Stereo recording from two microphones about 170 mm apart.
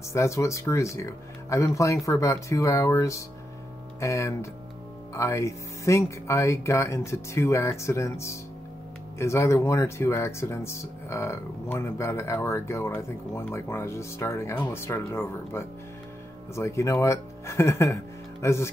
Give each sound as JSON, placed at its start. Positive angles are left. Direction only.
{"t": 0.1, "sound": "speech", "side_deg": 15}